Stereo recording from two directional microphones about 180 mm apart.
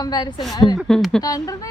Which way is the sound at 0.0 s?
25° left (ahead or behind).